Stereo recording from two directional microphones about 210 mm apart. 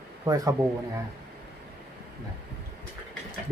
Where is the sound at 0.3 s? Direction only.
15° right (ahead or behind).